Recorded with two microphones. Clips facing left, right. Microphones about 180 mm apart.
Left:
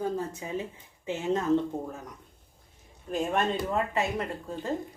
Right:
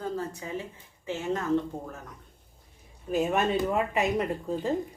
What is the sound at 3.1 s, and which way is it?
Speech, 5° right (ahead or behind).